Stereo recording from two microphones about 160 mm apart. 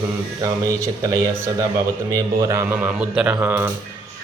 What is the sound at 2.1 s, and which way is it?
Speech, 20° right (ahead or behind).